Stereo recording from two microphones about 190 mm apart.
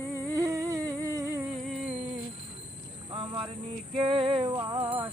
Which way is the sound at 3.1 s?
25° right (ahead or behind).